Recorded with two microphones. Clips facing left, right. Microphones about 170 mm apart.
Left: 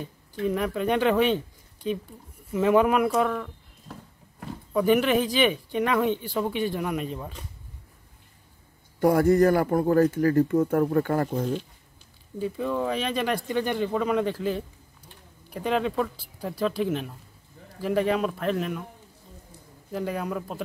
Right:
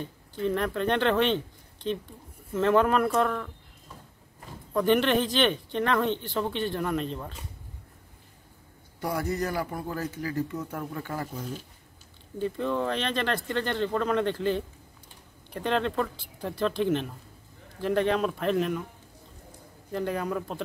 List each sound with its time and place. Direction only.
0.0 s speech: 10° left (ahead or behind)
3.9 s a sound: 75° left (ahead or behind)
4.7 s speech: 5° left (ahead or behind)
9.0 s speech: 50° left (ahead or behind)
12.4 s speech: 5° left (ahead or behind)
19.9 s speech: 5° left (ahead or behind)